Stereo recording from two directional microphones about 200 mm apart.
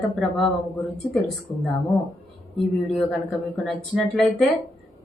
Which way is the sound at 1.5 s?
Centre (ahead or behind).